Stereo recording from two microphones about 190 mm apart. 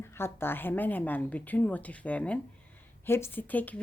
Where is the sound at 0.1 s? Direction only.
10° left (ahead or behind).